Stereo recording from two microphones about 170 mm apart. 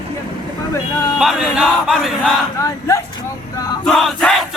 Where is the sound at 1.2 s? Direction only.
5° right (ahead or behind).